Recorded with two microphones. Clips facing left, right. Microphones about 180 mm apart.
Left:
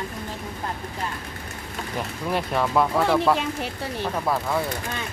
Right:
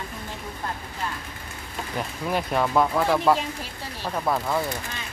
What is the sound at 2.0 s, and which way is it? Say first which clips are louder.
Speech: even; centre (ahead or behind).